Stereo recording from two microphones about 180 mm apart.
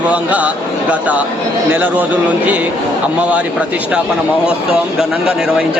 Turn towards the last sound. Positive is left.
turn(degrees=-5)  # may be behind; listen again after turning